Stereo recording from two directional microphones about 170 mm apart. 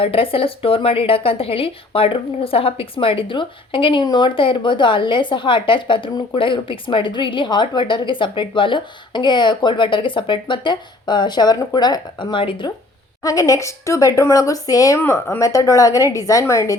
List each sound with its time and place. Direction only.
0.0 s a woman's voice: 35° left (ahead or behind); by 16.7 s 15° left (ahead or behind)